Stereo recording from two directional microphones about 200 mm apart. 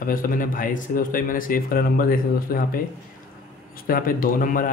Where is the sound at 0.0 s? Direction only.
45° left (ahead or behind).